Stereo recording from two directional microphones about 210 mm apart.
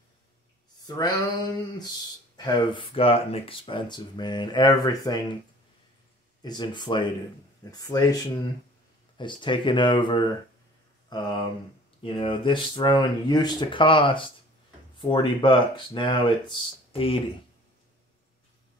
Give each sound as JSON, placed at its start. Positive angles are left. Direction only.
{"t": 0.8, "sound": "speech", "side_deg": 20}
{"t": 6.4, "sound": "speech", "side_deg": 20}
{"t": 9.2, "sound": "speech", "side_deg": 25}